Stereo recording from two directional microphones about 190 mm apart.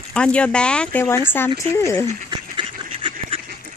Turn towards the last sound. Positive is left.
turn(degrees=-25)  # may be behind; listen again after turning